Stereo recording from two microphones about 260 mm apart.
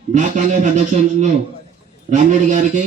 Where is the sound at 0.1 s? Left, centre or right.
Right.